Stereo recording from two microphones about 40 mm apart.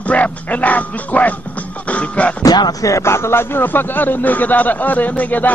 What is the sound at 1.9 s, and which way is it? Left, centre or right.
Music, left.